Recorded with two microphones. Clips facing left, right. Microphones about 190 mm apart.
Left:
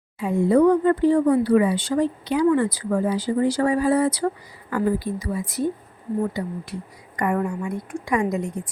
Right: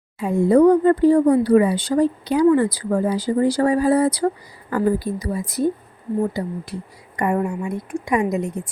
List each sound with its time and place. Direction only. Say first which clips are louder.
0.2 s speech: right 3 dB; 40° right (ahead or behind)
7.2 s a woman's voice: right 2 dB; 25° right (ahead or behind)